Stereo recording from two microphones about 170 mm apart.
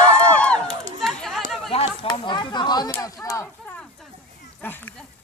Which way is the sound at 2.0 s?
25° left (ahead or behind).